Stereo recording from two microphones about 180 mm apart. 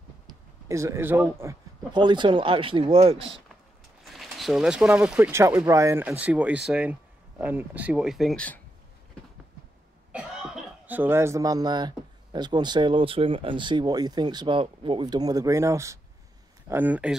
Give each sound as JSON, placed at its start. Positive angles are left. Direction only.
{"t": 0.3, "sound": "a sound", "side_deg": -15}
{"t": 1.4, "sound": "speech", "side_deg": -20}
{"t": 4.0, "sound": "speech", "side_deg": 0}
{"t": 10.1, "sound": "speech", "side_deg": -5}